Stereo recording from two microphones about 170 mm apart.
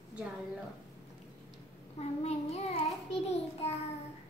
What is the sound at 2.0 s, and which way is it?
Child singing, 40° left (ahead or behind).